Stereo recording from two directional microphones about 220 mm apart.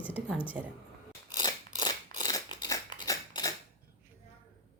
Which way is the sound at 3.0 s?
15° left (ahead or behind).